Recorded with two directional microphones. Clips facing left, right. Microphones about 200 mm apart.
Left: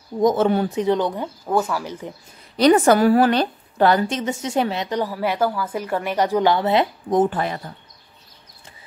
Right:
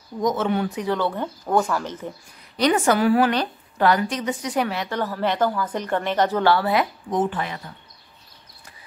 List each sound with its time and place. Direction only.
0.2 s speech: 30° left (ahead or behind); by 2.1 s 10° left (ahead or behind)
2.5 s a woman's voice: 35° left (ahead or behind)
7.1 s a woman's voice: 40° left (ahead or behind)